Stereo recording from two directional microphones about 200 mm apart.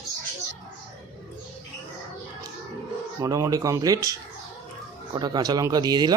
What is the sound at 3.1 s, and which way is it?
Speech, 15° right (ahead or behind).